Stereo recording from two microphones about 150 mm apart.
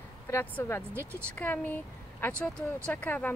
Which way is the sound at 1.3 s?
10° left (ahead or behind).